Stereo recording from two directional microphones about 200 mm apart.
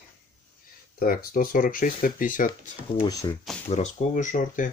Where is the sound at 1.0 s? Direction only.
45° left (ahead or behind).